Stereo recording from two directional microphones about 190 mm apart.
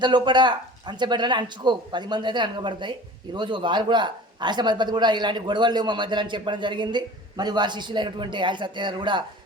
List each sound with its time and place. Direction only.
0.0 s a man's voice: 25° right (ahead or behind)